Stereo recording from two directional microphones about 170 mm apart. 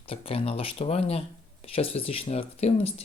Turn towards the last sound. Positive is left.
turn(degrees=35)  # may be behind; listen again after turning